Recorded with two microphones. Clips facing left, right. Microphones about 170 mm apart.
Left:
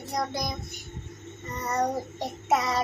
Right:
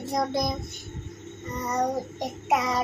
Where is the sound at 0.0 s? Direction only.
20° right (ahead or behind).